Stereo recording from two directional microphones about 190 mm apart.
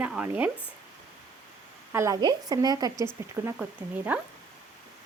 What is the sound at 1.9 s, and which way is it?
A woman's voice, 15° right (ahead or behind).